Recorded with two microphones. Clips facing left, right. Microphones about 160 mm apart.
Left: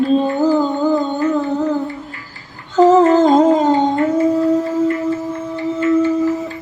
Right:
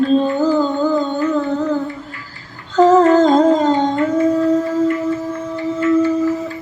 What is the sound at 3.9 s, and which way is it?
Dog, 20° left (ahead or behind).